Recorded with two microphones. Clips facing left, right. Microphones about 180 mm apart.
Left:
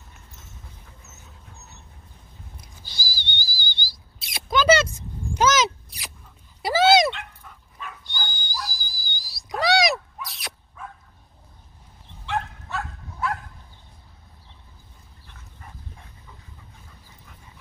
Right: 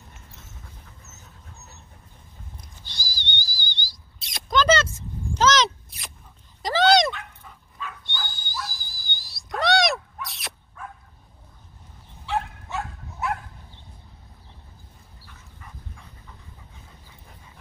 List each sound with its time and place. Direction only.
2.5 s whistling: 5° left (ahead or behind)
6.6 s dog: 5° left (ahead or behind)
12.3 s dog: 15° right (ahead or behind)